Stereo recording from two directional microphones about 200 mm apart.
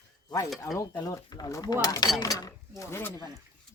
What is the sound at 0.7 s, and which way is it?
Speech, 20° left (ahead or behind).